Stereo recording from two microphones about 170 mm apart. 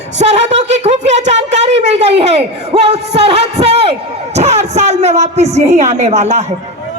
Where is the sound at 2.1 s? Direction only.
35° right (ahead or behind).